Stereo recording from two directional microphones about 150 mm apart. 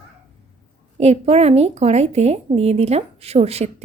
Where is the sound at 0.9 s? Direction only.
45° right (ahead or behind).